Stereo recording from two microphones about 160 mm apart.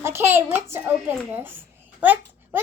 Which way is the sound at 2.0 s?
10° right (ahead or behind).